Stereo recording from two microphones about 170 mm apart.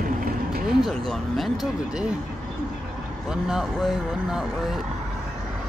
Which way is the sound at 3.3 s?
Centre (ahead or behind).